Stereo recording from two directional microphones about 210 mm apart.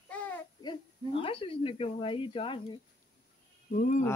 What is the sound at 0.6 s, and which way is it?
Speech, 25° left (ahead or behind).